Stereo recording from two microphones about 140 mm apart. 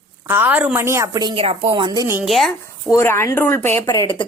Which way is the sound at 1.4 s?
40° right (ahead or behind).